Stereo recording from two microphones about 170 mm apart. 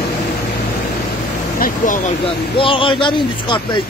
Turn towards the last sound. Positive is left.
turn(degrees=30)  # may be behind; listen again after turning